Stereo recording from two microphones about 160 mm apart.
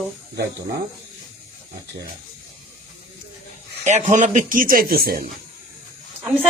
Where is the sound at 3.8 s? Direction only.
50° right (ahead or behind); by 5.3 s 65° right (ahead or behind).